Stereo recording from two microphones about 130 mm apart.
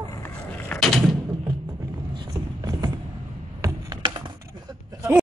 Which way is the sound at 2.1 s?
30° right (ahead or behind).